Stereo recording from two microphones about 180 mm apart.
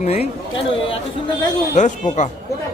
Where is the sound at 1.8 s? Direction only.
40° left (ahead or behind).